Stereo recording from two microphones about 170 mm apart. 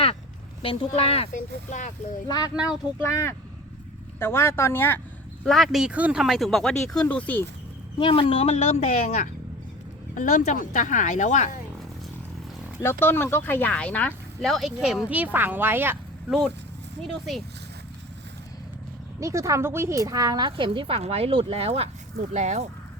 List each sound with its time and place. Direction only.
0.6 s a woman's voice: 30° left (ahead or behind)
1.3 s speech: 50° left (ahead or behind)
2.2 s speech: 25° left (ahead or behind)
5.5 s speech: centre (ahead or behind)
7.9 s a woman's voice: 30° left (ahead or behind)
12.8 s speech: 15° left (ahead or behind); by 16.0 s 10° right (ahead or behind)
17.1 s speech: centre (ahead or behind)
19.2 s a woman's voice: 20° right (ahead or behind); by 22.6 s 40° right (ahead or behind)